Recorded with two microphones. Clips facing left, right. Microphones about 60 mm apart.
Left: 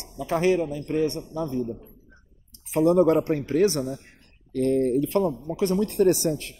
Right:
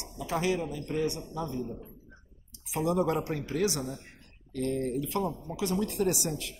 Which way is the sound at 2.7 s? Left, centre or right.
Left.